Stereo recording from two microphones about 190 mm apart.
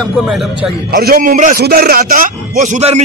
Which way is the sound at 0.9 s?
50° right (ahead or behind).